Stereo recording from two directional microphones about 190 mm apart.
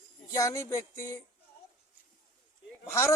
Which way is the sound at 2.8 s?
15° left (ahead or behind).